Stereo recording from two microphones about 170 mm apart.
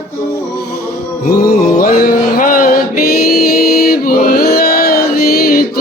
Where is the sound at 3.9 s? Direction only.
60° left (ahead or behind).